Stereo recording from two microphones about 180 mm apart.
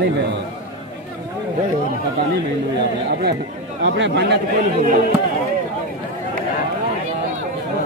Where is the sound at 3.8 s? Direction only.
80° right.